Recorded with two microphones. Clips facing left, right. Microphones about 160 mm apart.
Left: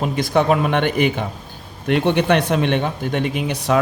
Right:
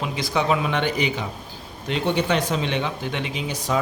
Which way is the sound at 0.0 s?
50° left (ahead or behind).